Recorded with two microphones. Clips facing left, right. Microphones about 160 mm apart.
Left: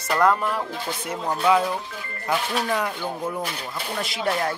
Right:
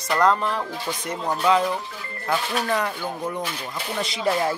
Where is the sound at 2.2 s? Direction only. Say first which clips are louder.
Even; 10° left (ahead or behind).